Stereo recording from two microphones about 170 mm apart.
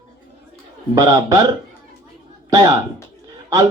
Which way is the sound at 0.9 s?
20° right (ahead or behind).